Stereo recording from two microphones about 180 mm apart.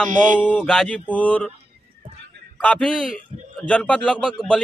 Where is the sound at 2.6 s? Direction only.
5° left (ahead or behind).